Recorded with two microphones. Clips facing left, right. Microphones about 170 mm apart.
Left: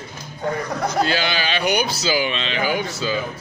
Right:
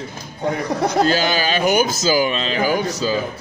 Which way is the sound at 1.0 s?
40° right (ahead or behind).